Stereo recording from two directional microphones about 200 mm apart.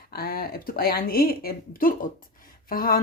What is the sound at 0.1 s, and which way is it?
A woman's voice, 50° left (ahead or behind).